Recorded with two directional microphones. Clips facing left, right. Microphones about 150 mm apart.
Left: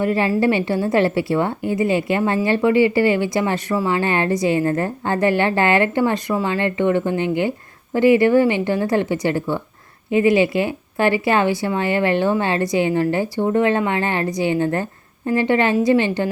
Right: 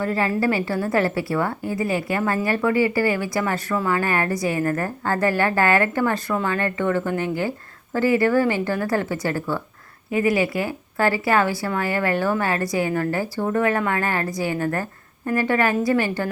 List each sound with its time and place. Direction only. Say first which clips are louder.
0.0 s a woman's voice: left 4 dB; 20° left (ahead or behind)